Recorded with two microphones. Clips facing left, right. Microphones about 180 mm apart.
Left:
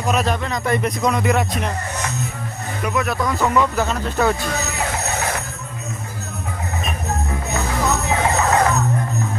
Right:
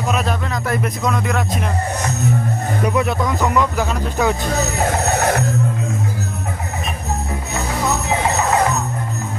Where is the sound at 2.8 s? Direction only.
30° right (ahead or behind).